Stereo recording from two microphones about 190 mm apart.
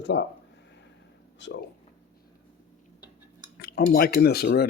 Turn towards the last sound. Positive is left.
turn(degrees=55)  # may be behind; listen again after turning